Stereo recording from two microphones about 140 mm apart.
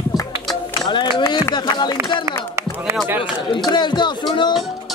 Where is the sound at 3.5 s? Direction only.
35° left (ahead or behind).